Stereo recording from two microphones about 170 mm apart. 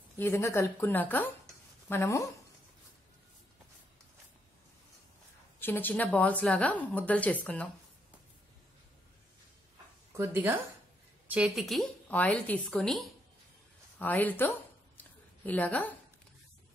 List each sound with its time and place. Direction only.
0.2 s speech: 15° left (ahead or behind)
5.6 s speech: 10° left (ahead or behind)
10.1 s a woman's voice: 15° right (ahead or behind); by 14.5 s 10° left (ahead or behind)
15.0 s a sound: 10° left (ahead or behind)